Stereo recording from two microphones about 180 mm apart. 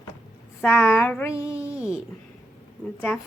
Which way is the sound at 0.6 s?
15° left (ahead or behind).